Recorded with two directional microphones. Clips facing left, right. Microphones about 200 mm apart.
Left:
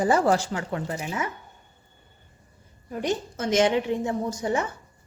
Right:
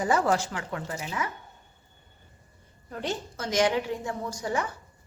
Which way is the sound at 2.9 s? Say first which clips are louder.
Left 5 dB; 15° left (ahead or behind).